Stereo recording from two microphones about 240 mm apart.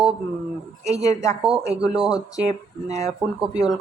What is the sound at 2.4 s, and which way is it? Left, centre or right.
Speech, right.